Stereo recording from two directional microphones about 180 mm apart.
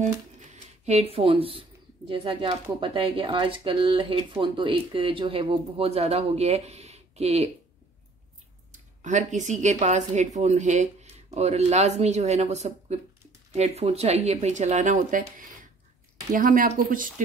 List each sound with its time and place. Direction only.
0.0 s a sound: 40° right (ahead or behind)
1.1 s speech: 30° right (ahead or behind)
9.0 s speech: 40° right (ahead or behind)